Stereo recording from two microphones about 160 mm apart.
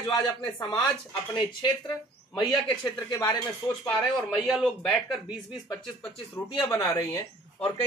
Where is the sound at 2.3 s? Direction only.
25° left (ahead or behind).